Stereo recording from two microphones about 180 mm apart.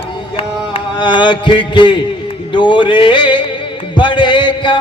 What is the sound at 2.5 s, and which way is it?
Music, 25° left (ahead or behind).